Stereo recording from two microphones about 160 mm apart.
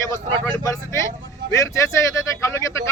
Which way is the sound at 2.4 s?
15° left (ahead or behind).